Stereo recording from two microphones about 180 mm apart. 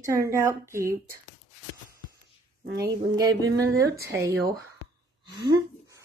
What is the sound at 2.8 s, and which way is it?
Speech, 20° right (ahead or behind).